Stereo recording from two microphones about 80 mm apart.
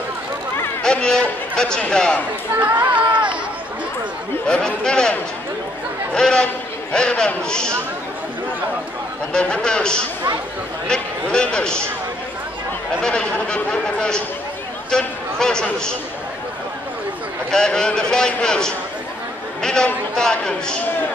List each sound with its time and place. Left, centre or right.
0.8 s speech: centre
2.6 s speech: right
4.5 s speech: centre
6.1 s a man's voice: centre
9.3 s a man's voice: centre
13.0 s a man's voice: centre
17.5 s speech: centre